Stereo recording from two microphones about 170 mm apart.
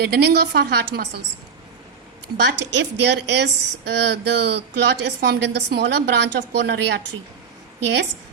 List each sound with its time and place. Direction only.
0.0 s a woman's voice: 70° right (ahead or behind)
2.5 s a woman's voice: 90° right